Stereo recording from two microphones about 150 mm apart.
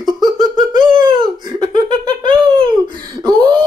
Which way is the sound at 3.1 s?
30° right (ahead or behind).